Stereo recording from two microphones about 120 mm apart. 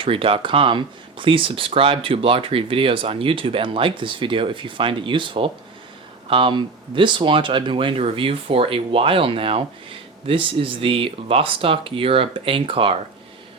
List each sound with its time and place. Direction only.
0.0 s speech: 50° right (ahead or behind)